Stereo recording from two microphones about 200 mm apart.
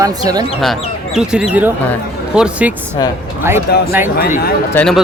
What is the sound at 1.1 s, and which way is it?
Speech, 5° right (ahead or behind).